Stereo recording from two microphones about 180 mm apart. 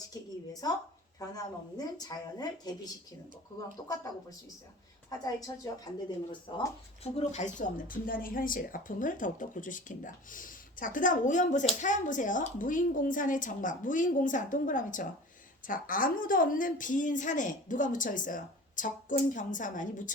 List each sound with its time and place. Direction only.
0.1 s a woman's voice: 20° left (ahead or behind)
1.7 s speech: 20° left (ahead or behind)
5.0 s speech: 20° left (ahead or behind)
7.0 s a woman's voice: 35° left (ahead or behind)